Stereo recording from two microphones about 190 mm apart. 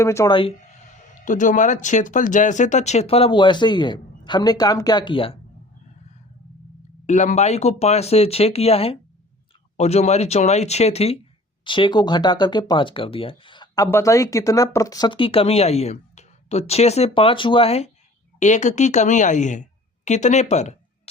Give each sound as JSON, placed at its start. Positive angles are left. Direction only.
{"t": 0.0, "sound": "speech", "side_deg": 15}
{"t": 1.2, "sound": "speech", "side_deg": 40}
{"t": 7.1, "sound": "speech", "side_deg": 40}